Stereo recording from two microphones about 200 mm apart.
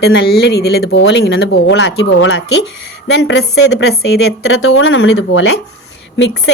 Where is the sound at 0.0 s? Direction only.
55° left (ahead or behind).